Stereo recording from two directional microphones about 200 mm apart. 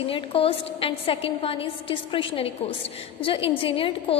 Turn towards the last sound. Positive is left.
turn(degrees=25)  # may be behind; listen again after turning